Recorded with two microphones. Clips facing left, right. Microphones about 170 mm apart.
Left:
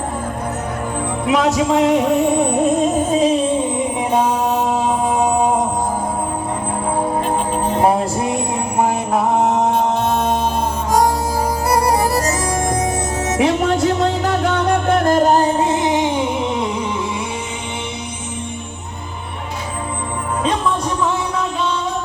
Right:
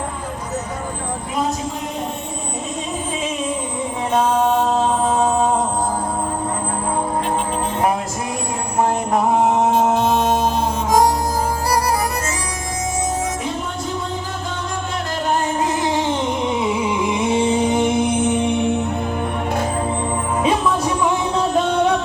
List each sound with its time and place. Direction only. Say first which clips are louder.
1.3 s music: left 9 dB; 80° left; by 3.6 s 35° left (ahead or behind)
13.4 s music: left 10 dB; 75° left (ahead or behind); by 16.1 s 20° left (ahead or behind)
17.2 s music: right 9 dB; 30° right (ahead or behind)
17.7 s music: right 11 dB; 50° right (ahead or behind)
21.5 s music: right 5 dB; 50° right (ahead or behind)